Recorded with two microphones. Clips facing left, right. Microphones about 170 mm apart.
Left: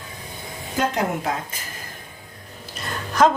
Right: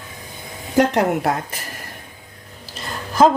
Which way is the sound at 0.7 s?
70° right (ahead or behind).